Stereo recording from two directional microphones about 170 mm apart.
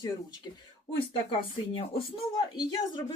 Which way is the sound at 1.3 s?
30° left (ahead or behind).